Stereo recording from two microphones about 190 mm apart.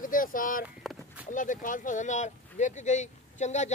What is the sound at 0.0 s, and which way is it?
Speech, 45° left (ahead or behind).